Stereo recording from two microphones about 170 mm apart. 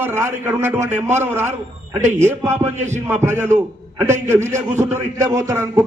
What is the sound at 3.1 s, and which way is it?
A man's voice, 15° right (ahead or behind).